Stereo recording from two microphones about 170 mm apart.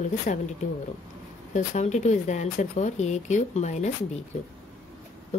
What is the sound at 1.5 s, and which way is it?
Speech, 40° left (ahead or behind).